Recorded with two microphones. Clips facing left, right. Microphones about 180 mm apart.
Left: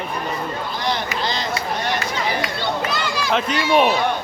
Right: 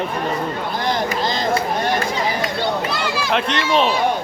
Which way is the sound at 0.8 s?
45° right (ahead or behind).